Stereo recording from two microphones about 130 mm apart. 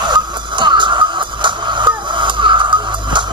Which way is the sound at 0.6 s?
35° right (ahead or behind).